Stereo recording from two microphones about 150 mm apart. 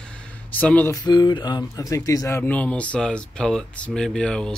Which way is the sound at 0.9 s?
30° left (ahead or behind).